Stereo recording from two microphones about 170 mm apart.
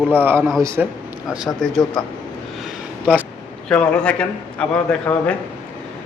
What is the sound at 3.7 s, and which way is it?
A man's voice, 5° left (ahead or behind).